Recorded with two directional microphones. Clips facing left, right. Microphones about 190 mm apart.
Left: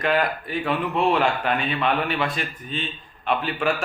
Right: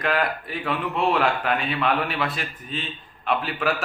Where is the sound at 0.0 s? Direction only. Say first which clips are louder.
Left 2 dB; centre (ahead or behind).